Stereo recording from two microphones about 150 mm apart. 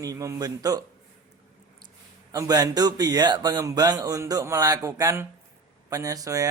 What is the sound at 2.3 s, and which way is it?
Speech, 25° right (ahead or behind).